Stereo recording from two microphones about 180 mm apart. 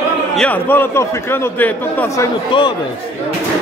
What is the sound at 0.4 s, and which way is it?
A man's voice, 10° left (ahead or behind).